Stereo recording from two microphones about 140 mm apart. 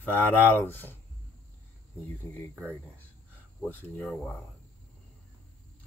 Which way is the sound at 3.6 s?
15° left (ahead or behind).